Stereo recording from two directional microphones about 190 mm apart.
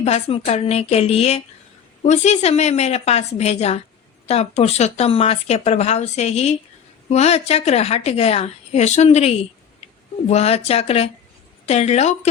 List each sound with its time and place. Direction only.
0.0 s speech: 30° left (ahead or behind)